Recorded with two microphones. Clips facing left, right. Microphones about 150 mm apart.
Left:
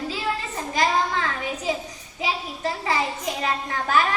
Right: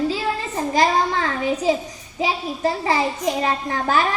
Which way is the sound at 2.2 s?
35° right (ahead or behind).